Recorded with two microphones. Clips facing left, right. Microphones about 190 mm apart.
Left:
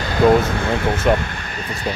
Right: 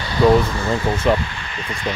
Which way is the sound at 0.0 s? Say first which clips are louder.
Even; 50° left (ahead or behind).